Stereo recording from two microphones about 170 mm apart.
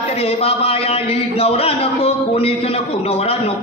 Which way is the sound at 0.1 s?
35° left (ahead or behind).